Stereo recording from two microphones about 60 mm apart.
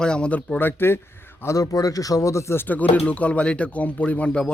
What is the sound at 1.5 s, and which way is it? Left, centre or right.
Speech, left.